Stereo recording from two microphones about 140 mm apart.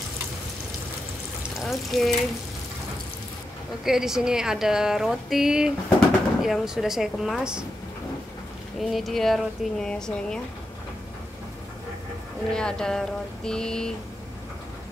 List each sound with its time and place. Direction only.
1.6 s a woman's voice: centre (ahead or behind)
3.8 s a woman's voice: 5° right (ahead or behind)
8.7 s a woman's voice: centre (ahead or behind)
12.4 s a woman's voice: 5° left (ahead or behind)